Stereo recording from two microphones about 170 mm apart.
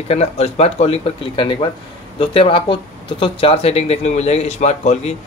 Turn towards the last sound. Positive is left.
turn(degrees=40)  # may be behind; listen again after turning